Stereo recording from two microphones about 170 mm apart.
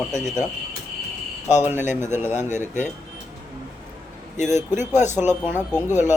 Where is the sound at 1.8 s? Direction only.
45° left (ahead or behind).